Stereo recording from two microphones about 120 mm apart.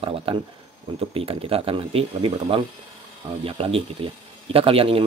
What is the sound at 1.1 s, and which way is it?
A man's voice, 50° right (ahead or behind).